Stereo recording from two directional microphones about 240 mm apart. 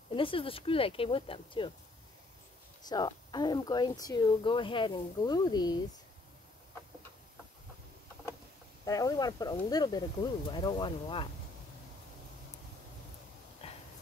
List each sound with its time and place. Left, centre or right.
0.1 s speech: left
2.9 s speech: centre
8.8 s speech: centre
13.6 s a sound: left